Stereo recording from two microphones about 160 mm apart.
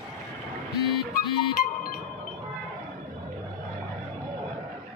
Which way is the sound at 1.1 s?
65° left (ahead or behind).